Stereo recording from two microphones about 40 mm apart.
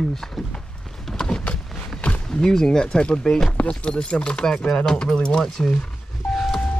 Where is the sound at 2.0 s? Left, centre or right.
Left.